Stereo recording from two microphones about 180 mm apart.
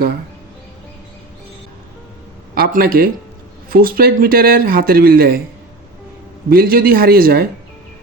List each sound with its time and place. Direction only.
2.6 s speech: 55° right (ahead or behind)
6.5 s speech: 55° right (ahead or behind)